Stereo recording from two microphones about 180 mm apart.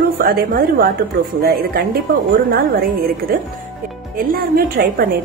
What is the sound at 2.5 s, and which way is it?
A woman's voice, 55° right (ahead or behind).